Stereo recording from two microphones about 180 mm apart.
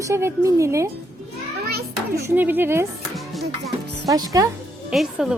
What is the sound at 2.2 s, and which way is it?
Speech, 10° right (ahead or behind).